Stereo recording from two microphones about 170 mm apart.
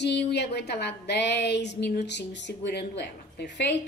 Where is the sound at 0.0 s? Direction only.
80° left.